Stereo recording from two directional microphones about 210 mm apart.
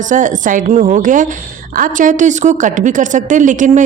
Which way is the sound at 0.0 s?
35° right (ahead or behind).